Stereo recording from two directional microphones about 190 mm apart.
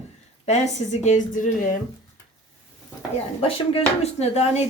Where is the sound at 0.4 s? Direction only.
35° left (ahead or behind).